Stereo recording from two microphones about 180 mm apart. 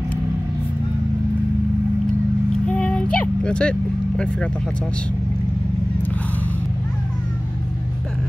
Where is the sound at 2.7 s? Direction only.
5° left (ahead or behind).